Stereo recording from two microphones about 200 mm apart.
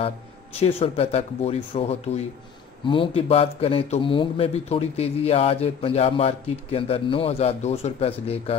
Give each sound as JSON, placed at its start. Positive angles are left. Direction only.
{"t": 0.6, "sound": "speech", "side_deg": 30}